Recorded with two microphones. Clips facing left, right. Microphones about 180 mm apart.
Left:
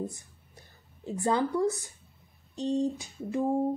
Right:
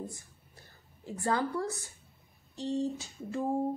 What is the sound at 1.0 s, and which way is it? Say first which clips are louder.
Speech: left 4 dB; 20° left (ahead or behind).